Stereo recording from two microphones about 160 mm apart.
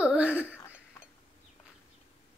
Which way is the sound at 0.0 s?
5° right (ahead or behind).